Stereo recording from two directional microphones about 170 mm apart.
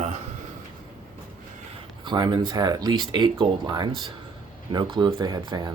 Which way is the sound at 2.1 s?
25° right (ahead or behind).